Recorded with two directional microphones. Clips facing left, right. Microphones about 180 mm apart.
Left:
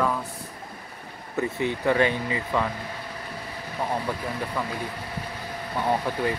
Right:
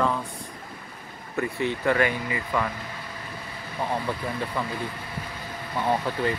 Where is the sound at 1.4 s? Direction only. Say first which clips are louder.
Left 1 dB; 20° left (ahead or behind).